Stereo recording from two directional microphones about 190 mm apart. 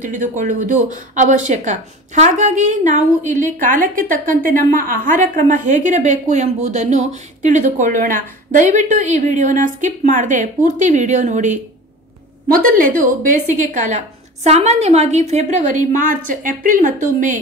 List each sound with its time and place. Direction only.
0.0 s a woman's voice: 45° right (ahead or behind)
13.0 s a woman's voice: 45° right (ahead or behind)